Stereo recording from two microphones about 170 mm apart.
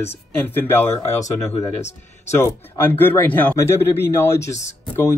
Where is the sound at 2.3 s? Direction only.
15° left (ahead or behind).